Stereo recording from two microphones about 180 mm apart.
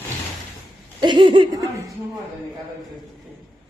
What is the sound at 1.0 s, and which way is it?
Speech, 25° right (ahead or behind).